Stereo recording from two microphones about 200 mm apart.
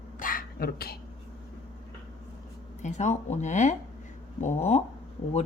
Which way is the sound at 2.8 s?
35° left (ahead or behind).